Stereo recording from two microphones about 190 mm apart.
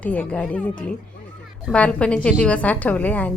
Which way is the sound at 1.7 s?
5° left (ahead or behind).